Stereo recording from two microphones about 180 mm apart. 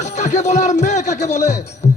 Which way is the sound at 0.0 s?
40° left (ahead or behind).